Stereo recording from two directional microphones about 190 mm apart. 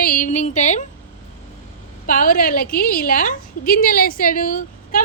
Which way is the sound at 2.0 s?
45° left (ahead or behind).